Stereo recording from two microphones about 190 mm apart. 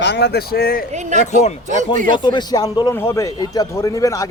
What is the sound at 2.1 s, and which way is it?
Speech, 25° left (ahead or behind).